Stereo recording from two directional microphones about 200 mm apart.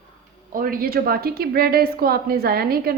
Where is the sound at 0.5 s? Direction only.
45° right (ahead or behind).